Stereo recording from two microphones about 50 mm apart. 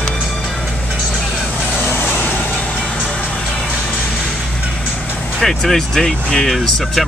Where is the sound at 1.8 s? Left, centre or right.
Left.